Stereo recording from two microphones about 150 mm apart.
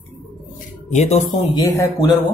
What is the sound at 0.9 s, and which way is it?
Speech, 50° left (ahead or behind).